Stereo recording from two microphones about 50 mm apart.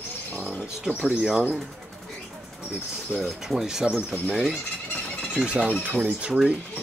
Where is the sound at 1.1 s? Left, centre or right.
Centre.